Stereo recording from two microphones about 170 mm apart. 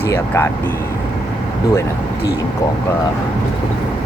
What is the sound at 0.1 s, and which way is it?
Speech, 15° left (ahead or behind).